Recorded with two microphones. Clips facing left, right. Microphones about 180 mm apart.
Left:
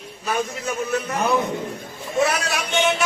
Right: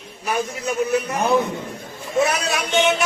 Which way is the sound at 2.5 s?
20° right (ahead or behind).